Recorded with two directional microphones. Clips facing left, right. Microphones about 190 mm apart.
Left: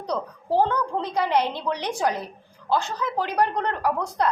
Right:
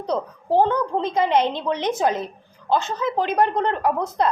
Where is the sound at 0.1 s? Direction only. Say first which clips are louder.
Right 3 dB; 20° right (ahead or behind).